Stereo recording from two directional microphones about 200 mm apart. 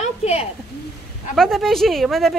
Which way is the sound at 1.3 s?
Centre (ahead or behind).